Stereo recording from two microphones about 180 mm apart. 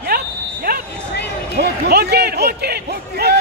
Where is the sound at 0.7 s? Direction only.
60° right (ahead or behind).